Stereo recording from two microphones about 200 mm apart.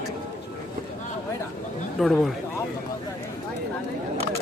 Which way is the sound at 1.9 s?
Centre (ahead or behind).